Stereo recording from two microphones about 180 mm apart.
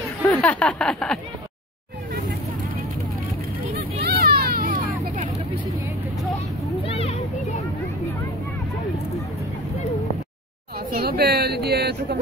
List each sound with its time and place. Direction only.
0.2 s speech: 10° left (ahead or behind)
3.7 s hubbub: 60° right (ahead or behind)
6.9 s children playing: 35° left (ahead or behind)
10.9 s a sound: 60° right (ahead or behind)